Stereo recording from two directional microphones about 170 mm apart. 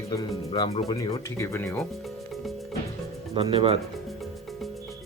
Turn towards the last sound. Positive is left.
turn(degrees=-35)  # may be behind; listen again after turning